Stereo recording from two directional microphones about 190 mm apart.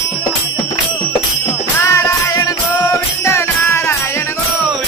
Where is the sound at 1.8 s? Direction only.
15° left (ahead or behind).